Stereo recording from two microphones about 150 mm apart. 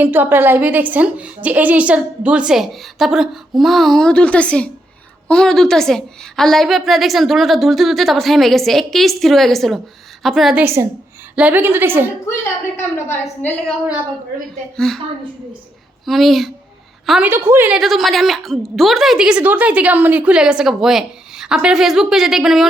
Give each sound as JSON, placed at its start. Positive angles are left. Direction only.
{"t": 0.0, "sound": "a woman's voice", "side_deg": -15}
{"t": 10.6, "sound": "a woman's voice", "side_deg": -15}
{"t": 12.7, "sound": "a woman's voice", "side_deg": 15}
{"t": 14.8, "sound": "a woman's voice", "side_deg": 0}
{"t": 16.0, "sound": "a woman's voice", "side_deg": 0}
{"t": 17.7, "sound": "a woman's voice", "side_deg": 0}